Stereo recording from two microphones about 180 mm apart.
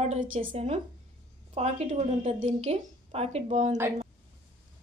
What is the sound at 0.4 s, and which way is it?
A woman's voice, 30° right (ahead or behind).